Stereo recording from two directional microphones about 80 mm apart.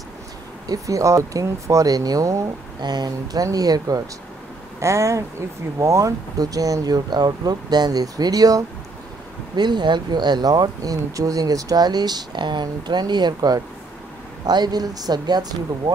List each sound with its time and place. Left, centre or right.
0.7 s speech: right
2.8 s speech: right
4.7 s speech: right
9.6 s speech: right